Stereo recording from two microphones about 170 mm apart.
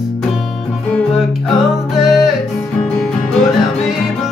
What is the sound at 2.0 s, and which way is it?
Music, centre (ahead or behind).